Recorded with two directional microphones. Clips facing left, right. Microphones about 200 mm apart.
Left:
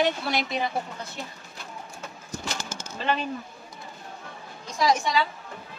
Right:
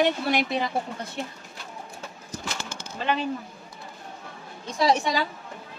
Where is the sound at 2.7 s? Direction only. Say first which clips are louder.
Left 1 dB; 40° left (ahead or behind).